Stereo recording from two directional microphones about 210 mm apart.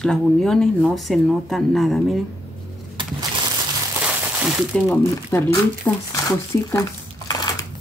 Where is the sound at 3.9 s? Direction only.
5° right (ahead or behind).